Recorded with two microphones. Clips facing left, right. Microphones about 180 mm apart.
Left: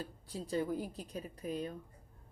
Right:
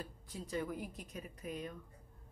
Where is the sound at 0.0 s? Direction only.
30° left (ahead or behind).